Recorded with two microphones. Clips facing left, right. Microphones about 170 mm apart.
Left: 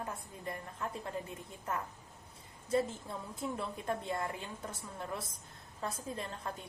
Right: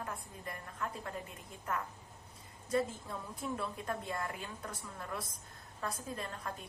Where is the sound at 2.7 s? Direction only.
25° left (ahead or behind).